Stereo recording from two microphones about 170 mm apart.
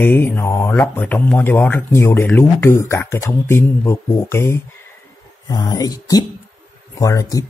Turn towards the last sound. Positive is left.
turn(degrees=20)  # may be behind; listen again after turning